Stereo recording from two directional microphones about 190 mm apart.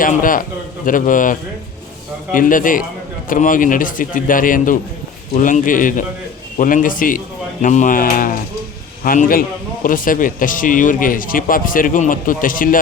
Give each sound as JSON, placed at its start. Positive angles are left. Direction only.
{"t": 0.0, "sound": "speech", "side_deg": 45}